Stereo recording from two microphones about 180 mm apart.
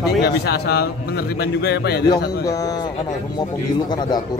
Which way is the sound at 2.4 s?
20° left (ahead or behind).